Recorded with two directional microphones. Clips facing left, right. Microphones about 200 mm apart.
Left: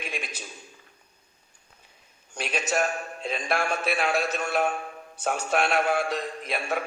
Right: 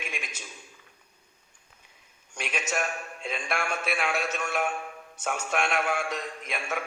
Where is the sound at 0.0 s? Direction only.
35° left (ahead or behind).